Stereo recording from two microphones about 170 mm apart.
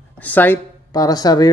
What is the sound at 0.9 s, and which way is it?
Speech, 20° left (ahead or behind).